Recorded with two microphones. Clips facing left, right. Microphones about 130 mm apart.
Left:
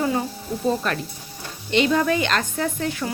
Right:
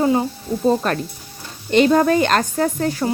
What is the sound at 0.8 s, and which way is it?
Speech, 40° right (ahead or behind).